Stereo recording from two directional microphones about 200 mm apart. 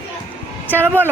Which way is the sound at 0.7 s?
10° right (ahead or behind).